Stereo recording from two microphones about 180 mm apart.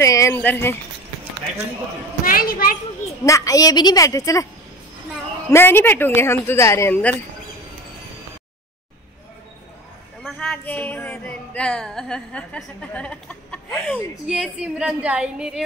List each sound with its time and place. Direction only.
0.0 s speech: 15° left (ahead or behind)
2.2 s a woman's voice: 55° left (ahead or behind)
3.3 s a woman's voice: 20° left (ahead or behind)
5.5 s speech: 15° left (ahead or behind)
10.2 s speech: 5° left (ahead or behind)
14.2 s speech: 5° right (ahead or behind)